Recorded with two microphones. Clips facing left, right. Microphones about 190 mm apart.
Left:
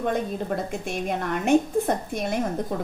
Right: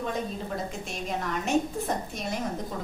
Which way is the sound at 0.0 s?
55° left (ahead or behind).